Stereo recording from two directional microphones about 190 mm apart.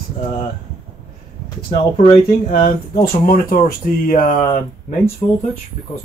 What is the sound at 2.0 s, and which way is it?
Speech, 45° left (ahead or behind).